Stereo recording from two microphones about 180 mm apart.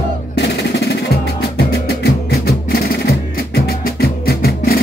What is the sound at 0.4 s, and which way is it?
Music, 65° left (ahead or behind).